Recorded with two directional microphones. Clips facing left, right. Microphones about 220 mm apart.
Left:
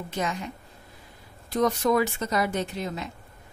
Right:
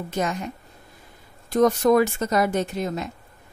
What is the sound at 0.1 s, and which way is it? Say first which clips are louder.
Speech: right 4 dB; 45° right (ahead or behind).